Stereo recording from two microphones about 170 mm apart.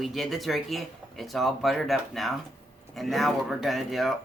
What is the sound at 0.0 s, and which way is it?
Speech, centre (ahead or behind).